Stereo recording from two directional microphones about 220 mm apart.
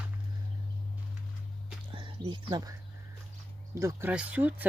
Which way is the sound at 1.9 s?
25° right (ahead or behind).